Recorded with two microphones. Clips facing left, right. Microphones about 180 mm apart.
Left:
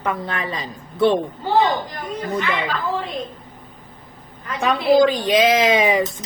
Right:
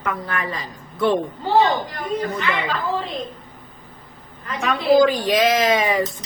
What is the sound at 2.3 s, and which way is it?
Speech, centre (ahead or behind).